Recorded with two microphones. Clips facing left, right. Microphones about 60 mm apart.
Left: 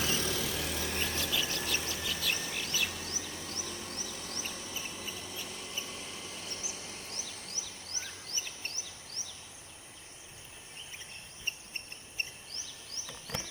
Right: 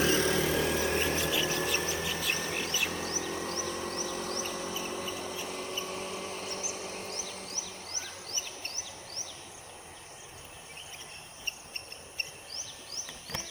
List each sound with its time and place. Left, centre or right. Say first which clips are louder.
0.0 s vehicle: right 7 dB; right
0.9 s music: right 5 dB; right
2.0 s bird: right 3 dB; right
3.2 s vehicle: right 8 dB; right
4.2 s a sound: right 7 dB; right
8.6 s a sound: right 2 dB; left